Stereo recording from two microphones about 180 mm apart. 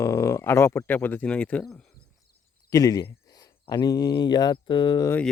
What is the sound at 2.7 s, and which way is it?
Speech, 20° left (ahead or behind).